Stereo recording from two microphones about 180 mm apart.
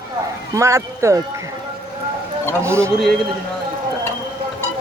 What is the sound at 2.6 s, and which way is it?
Speech, 15° right (ahead or behind).